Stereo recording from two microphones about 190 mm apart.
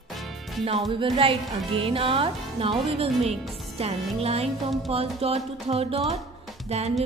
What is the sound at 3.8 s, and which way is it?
Music, 30° right (ahead or behind).